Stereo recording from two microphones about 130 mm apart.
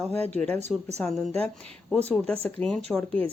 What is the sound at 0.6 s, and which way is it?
Speech, 60° right (ahead or behind).